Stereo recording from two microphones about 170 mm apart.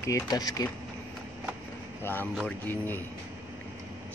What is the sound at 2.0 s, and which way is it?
A man's voice, 10° left (ahead or behind).